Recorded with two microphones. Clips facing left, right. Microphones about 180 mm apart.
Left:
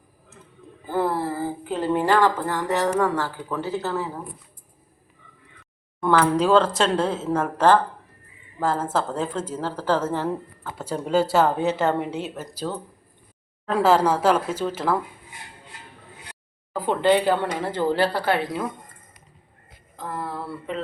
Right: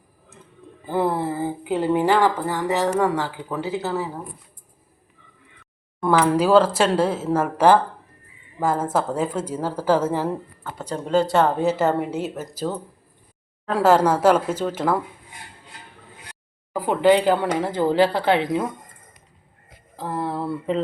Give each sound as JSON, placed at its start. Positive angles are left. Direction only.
{"t": 0.9, "sound": "speech", "side_deg": -15}
{"t": 6.0, "sound": "speech", "side_deg": -10}
{"t": 10.6, "sound": "speech", "side_deg": 0}
{"t": 16.7, "sound": "speech", "side_deg": -10}
{"t": 20.0, "sound": "speech", "side_deg": -30}